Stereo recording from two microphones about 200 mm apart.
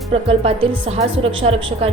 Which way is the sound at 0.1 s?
30° right (ahead or behind).